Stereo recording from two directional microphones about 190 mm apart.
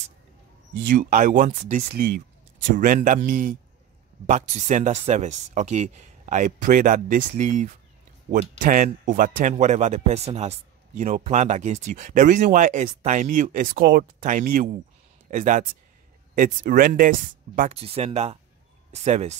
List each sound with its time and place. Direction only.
0.8 s speech: 45° right (ahead or behind)
17.7 s speech: 30° right (ahead or behind)